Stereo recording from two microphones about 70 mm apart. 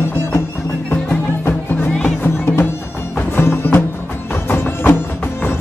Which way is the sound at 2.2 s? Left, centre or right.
Left.